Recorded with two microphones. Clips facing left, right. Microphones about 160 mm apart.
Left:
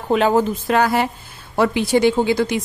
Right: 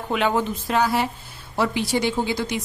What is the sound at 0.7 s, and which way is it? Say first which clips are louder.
A woman's voice: left 4 dB; 60° left (ahead or behind).